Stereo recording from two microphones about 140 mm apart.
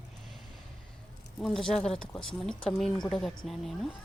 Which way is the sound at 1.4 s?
5° left (ahead or behind).